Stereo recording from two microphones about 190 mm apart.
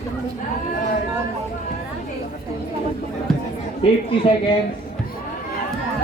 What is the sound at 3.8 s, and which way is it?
Speech, 25° left (ahead or behind).